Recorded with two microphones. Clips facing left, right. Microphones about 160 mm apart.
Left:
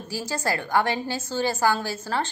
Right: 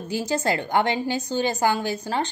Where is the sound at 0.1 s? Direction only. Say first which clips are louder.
Right 4 dB; 20° right (ahead or behind).